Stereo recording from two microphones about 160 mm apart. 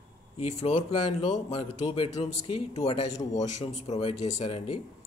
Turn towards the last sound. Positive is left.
turn(degrees=40)  # may be behind; listen again after turning